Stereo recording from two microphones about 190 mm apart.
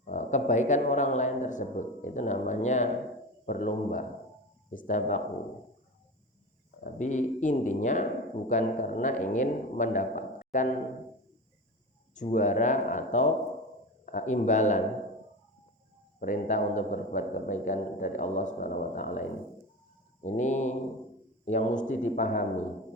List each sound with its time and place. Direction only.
0.0 s speech: 40° left (ahead or behind)
6.8 s a man's voice: 40° left (ahead or behind)
12.1 s speech: 40° left (ahead or behind)
16.2 s speech: 40° left (ahead or behind)
20.2 s speech: 40° left (ahead or behind)